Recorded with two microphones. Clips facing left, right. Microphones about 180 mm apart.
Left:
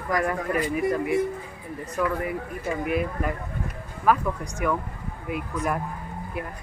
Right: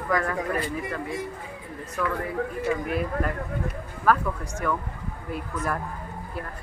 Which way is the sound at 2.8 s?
5° left (ahead or behind).